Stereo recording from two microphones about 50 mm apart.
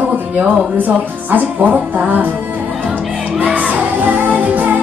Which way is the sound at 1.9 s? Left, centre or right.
Right.